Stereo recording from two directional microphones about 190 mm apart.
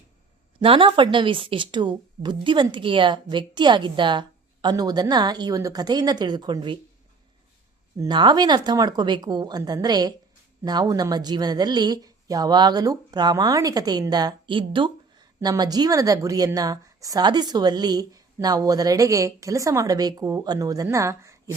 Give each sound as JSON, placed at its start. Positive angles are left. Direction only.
{"t": 0.6, "sound": "speech", "side_deg": -30}
{"t": 7.9, "sound": "speech", "side_deg": -20}